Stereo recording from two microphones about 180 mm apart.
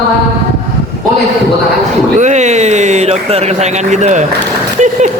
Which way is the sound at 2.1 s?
40° right (ahead or behind).